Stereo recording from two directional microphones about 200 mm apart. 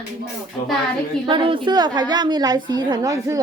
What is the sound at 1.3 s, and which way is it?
A woman's voice, 25° right (ahead or behind).